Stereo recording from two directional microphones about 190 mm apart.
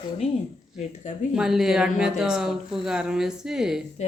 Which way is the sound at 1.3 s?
Centre (ahead or behind).